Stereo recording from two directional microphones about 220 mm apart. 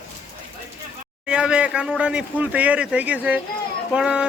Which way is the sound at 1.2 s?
5° right (ahead or behind).